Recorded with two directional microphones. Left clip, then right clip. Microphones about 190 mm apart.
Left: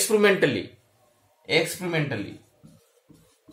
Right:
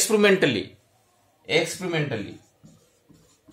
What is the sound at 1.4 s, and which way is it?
Speech, 15° right (ahead or behind).